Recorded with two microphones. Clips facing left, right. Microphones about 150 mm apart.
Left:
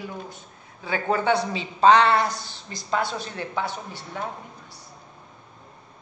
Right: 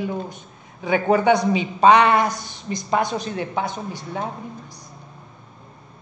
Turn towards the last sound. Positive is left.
turn(degrees=-15)  # may be behind; listen again after turning